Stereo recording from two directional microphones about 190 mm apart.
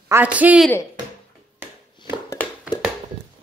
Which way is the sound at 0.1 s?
10° right (ahead or behind).